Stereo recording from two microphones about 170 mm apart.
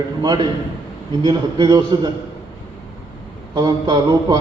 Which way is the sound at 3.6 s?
20° right (ahead or behind).